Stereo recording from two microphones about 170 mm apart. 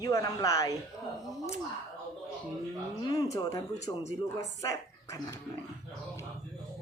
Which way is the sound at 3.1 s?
20° left (ahead or behind).